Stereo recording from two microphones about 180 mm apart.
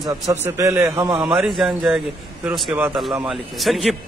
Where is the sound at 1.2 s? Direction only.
Centre (ahead or behind).